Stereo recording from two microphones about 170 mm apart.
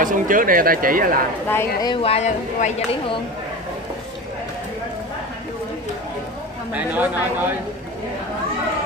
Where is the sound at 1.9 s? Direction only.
35° left (ahead or behind).